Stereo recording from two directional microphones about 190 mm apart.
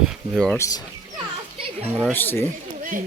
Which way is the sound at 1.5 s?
30° right (ahead or behind).